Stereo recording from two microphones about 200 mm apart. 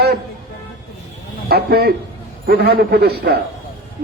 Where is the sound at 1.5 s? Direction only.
50° right (ahead or behind).